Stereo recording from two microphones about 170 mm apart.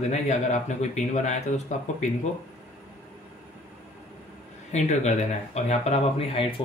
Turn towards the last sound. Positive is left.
turn(degrees=40)  # may be behind; listen again after turning